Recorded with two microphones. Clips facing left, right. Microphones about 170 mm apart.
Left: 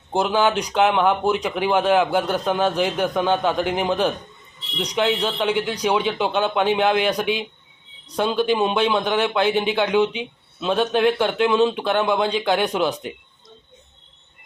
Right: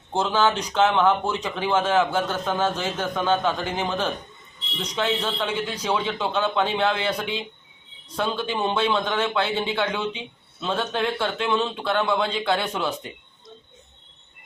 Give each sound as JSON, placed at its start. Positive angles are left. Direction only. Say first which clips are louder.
{"t": 0.1, "sound": "a man's voice", "louder": "left 3 dB", "side_deg": 15}